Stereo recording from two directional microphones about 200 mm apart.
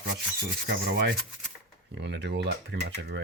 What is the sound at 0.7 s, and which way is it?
Speech, 55° right (ahead or behind).